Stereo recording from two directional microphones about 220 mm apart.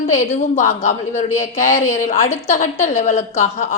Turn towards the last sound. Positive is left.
turn(degrees=30)  # may be behind; listen again after turning